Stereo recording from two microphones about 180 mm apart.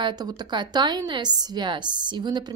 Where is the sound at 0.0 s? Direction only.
25° right (ahead or behind).